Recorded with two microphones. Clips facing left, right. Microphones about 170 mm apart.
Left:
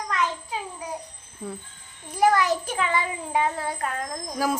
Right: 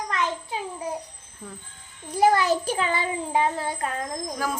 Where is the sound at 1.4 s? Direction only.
25° left (ahead or behind).